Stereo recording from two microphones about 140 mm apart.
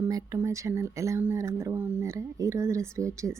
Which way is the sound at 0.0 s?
25° right (ahead or behind).